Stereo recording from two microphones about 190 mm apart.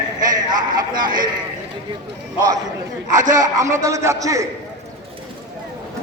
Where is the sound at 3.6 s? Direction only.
15° right (ahead or behind).